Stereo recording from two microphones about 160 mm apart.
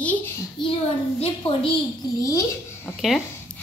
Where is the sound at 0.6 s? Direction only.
30° left (ahead or behind).